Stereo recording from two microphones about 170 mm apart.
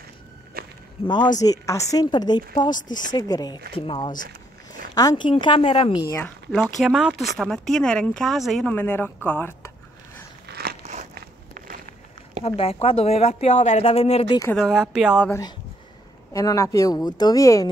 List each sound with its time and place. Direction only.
0.6 s walk: 65° right (ahead or behind)
1.0 s a woman's voice: 25° left (ahead or behind)
6.0 s speech: 15° left (ahead or behind)
6.5 s speech: centre (ahead or behind)
8.7 s speech: 10° left (ahead or behind)
10.5 s crunch: 70° right (ahead or behind)
11.1 s walk: 60° right (ahead or behind)
12.4 s speech: 35° left (ahead or behind)
14.6 s speech: 5° right (ahead or behind)
16.3 s a woman's voice: 20° left (ahead or behind)